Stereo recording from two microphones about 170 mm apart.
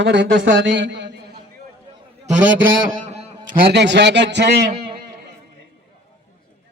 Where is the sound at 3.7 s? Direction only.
90° right.